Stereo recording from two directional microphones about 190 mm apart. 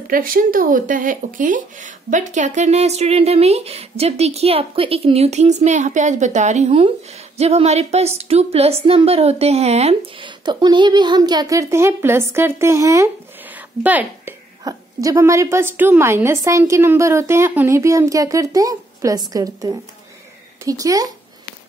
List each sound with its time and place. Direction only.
0.1 s a woman's voice: 45° right (ahead or behind); by 21.1 s 20° right (ahead or behind)